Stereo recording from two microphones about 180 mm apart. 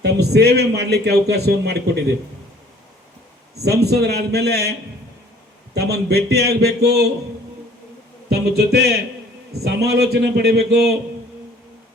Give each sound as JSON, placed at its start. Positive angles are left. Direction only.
{"t": 0.0, "sound": "a man's voice", "side_deg": -65}
{"t": 3.5, "sound": "a man's voice", "side_deg": -65}
{"t": 5.7, "sound": "a man's voice", "side_deg": -65}
{"t": 8.3, "sound": "a man's voice", "side_deg": -60}